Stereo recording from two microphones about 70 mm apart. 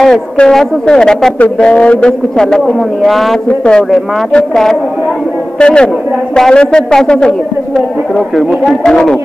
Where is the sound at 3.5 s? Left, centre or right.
Centre.